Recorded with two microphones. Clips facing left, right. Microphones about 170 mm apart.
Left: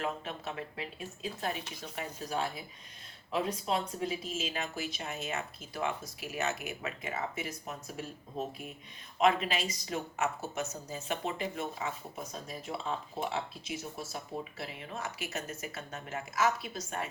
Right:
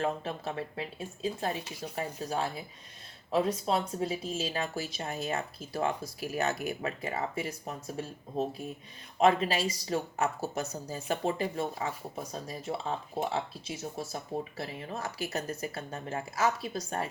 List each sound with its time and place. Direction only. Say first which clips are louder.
0.0 s speech: right 4 dB; 35° right (ahead or behind)
9.2 s speech: right 3 dB; 35° right (ahead or behind)
13.3 s speech: right 2 dB; 35° right (ahead or behind)